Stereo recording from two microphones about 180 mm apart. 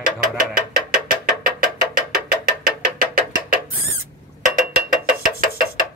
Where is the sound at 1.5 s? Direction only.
50° right (ahead or behind).